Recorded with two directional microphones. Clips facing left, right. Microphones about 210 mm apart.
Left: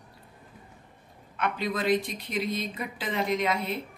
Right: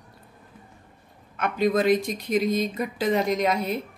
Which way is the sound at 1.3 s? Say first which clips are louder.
Right 8 dB; 45° right (ahead or behind).